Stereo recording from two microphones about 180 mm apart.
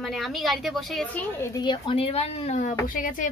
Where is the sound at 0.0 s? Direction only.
Centre (ahead or behind).